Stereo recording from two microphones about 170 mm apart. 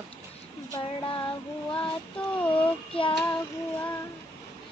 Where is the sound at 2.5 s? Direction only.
30° left (ahead or behind).